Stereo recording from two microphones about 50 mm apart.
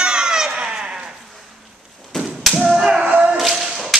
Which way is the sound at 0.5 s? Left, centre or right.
Centre.